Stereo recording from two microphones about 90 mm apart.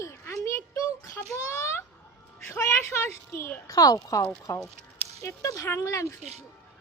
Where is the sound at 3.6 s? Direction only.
45° left (ahead or behind).